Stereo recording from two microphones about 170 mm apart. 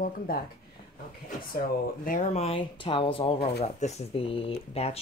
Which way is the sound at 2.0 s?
50° left (ahead or behind).